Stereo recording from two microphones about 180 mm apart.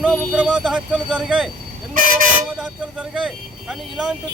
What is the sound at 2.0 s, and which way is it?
Vehicle, 50° right (ahead or behind).